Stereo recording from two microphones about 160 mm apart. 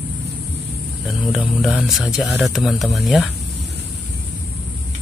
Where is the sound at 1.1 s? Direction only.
Centre (ahead or behind).